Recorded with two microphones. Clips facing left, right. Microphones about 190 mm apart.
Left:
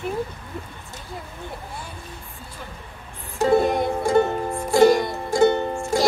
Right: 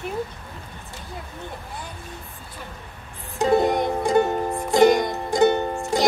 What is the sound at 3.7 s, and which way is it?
Music, 20° right (ahead or behind).